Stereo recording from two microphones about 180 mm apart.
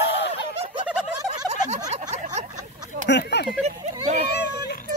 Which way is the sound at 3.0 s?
70° left (ahead or behind).